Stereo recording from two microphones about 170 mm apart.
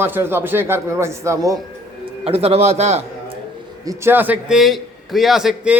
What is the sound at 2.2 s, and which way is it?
A man's voice, 35° right (ahead or behind).